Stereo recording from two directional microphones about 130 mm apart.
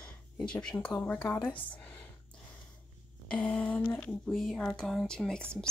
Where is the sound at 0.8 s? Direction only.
10° left (ahead or behind).